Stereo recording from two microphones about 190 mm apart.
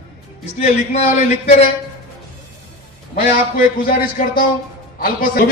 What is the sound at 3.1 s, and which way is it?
A man's voice, 50° left (ahead or behind).